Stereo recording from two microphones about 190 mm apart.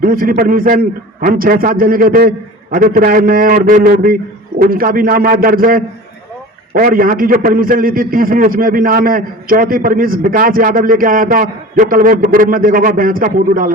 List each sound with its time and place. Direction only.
0.0 s a man's voice: 50° right (ahead or behind)